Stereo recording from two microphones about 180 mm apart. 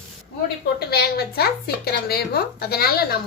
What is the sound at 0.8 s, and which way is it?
A woman's voice, 65° left (ahead or behind).